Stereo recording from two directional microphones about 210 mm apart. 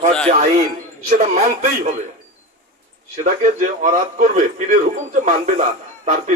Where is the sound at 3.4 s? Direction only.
35° right (ahead or behind).